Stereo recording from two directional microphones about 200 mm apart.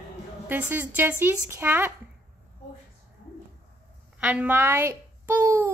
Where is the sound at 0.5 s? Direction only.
10° right (ahead or behind).